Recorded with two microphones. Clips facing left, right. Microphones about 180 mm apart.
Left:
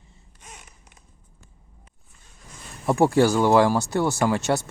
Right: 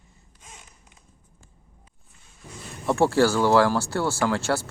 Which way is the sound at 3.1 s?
15° left (ahead or behind).